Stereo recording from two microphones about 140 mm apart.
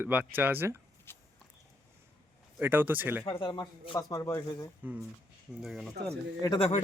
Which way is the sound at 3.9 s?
25° left (ahead or behind).